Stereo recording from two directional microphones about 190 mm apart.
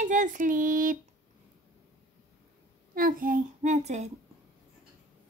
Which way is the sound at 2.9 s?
50° right (ahead or behind).